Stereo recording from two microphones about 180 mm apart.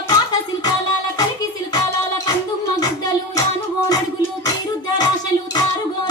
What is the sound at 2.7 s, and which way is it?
Music, 20° left (ahead or behind).